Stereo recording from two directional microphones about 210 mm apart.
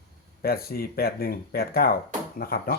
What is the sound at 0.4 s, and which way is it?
Speech, 45° left (ahead or behind).